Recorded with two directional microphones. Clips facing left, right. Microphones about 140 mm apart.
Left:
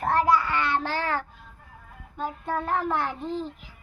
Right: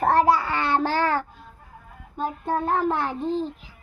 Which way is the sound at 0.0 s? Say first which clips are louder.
Right 3 dB; 35° right (ahead or behind).